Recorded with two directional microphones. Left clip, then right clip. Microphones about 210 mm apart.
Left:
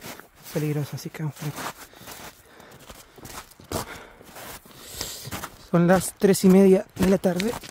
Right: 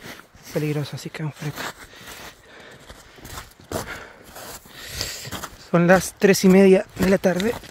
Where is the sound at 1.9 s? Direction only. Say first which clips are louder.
Right 3 dB; centre (ahead or behind).